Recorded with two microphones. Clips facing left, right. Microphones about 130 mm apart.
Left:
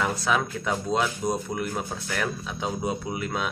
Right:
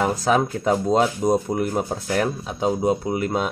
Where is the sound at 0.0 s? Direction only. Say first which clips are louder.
Right 6 dB; 40° right (ahead or behind).